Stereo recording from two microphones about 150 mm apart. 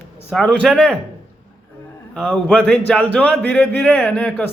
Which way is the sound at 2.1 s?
5° left (ahead or behind).